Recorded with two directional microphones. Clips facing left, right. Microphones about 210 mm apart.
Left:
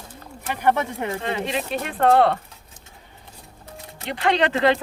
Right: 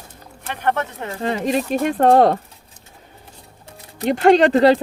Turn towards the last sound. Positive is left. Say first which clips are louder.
# right 7 dB
turn(degrees=-40)  # may be behind; listen again after turning